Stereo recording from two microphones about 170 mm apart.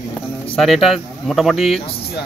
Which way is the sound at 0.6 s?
Centre (ahead or behind).